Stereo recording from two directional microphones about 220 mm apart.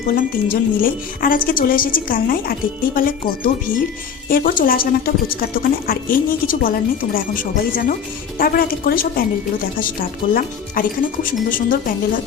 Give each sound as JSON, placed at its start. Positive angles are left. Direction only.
{"t": 0.1, "sound": "speech", "side_deg": 40}
{"t": 5.9, "sound": "speech", "side_deg": 40}